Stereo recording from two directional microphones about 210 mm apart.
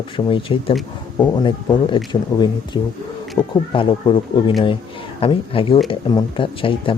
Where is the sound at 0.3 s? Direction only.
25° left (ahead or behind).